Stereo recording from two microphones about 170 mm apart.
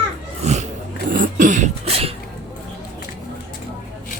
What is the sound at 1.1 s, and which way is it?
Cough, 50° right (ahead or behind).